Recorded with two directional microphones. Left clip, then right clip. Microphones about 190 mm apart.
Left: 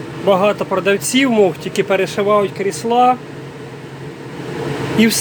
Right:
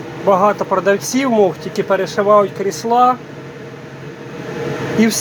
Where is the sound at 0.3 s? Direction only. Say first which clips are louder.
Right 1 dB; 20° left (ahead or behind).